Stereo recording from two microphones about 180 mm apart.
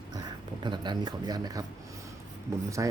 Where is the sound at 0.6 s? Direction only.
25° right (ahead or behind).